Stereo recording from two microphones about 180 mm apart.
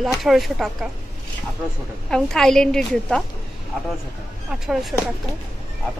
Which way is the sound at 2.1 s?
5° left (ahead or behind).